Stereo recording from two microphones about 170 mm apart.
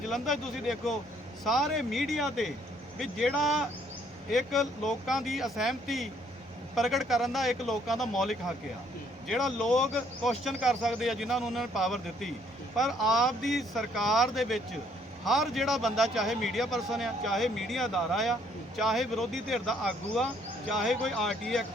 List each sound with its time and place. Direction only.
0.1 s a man's voice: centre (ahead or behind)